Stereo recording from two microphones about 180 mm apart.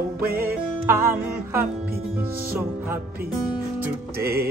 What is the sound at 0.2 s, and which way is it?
Music, 55° right (ahead or behind).